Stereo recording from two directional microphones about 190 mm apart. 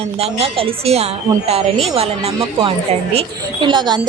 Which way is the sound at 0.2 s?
30° right (ahead or behind).